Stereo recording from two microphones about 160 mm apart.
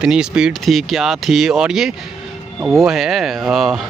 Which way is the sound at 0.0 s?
5° right (ahead or behind).